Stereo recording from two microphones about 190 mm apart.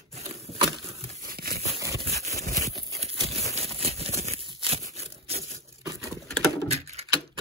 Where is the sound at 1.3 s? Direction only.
50° right (ahead or behind).